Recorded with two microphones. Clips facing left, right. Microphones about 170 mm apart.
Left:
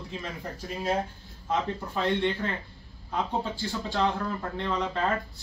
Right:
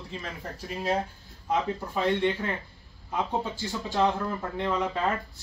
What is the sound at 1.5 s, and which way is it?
Speech, 5° right (ahead or behind).